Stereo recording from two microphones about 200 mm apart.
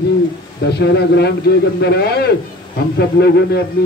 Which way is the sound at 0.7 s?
55° left (ahead or behind).